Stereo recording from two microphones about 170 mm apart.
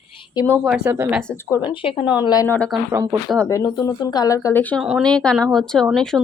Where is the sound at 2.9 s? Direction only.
15° right (ahead or behind).